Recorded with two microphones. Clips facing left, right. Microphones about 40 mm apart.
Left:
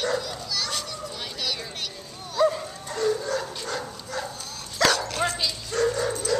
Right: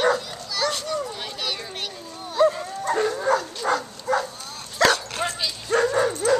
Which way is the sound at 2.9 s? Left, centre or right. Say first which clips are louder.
Right 4 dB; right.